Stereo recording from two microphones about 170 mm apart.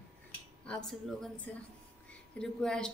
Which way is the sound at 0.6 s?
5° left (ahead or behind).